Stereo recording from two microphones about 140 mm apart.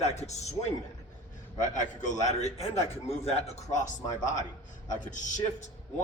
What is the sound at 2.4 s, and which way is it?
A man's voice, 50° left (ahead or behind).